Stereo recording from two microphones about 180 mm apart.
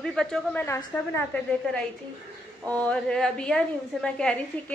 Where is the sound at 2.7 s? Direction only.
5° left (ahead or behind).